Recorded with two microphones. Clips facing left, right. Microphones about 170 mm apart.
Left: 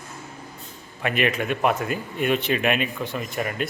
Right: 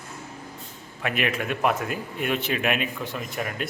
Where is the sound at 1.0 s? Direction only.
Centre (ahead or behind).